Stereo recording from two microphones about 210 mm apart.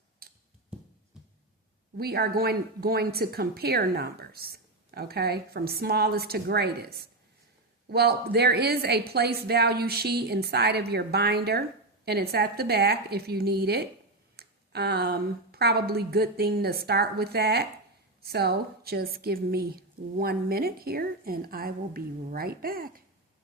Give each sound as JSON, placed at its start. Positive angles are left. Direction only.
{"t": 0.2, "sound": "tick", "side_deg": -45}
{"t": 2.0, "sound": "speech", "side_deg": -45}